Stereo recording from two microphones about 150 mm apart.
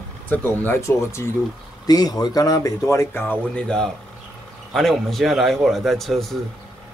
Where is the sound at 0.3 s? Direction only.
15° left (ahead or behind).